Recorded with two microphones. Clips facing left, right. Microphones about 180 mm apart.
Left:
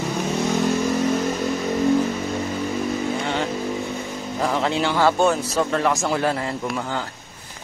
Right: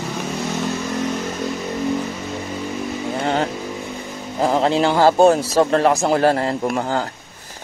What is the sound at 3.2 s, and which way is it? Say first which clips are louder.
Vehicle: right 4 dB; 45° right (ahead or behind).